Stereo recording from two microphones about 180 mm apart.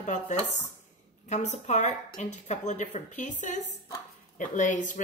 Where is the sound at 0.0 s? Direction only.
40° left (ahead or behind).